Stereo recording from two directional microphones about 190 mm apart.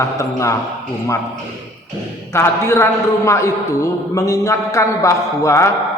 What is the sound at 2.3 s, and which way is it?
A man's voice, 15° left (ahead or behind).